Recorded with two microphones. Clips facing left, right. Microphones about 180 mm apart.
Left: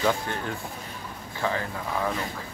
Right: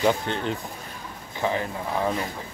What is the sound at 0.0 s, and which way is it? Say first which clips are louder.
Speech: right 3 dB; 20° right (ahead or behind).